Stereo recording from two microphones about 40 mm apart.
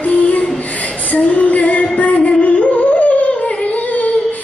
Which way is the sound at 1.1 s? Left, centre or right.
Left.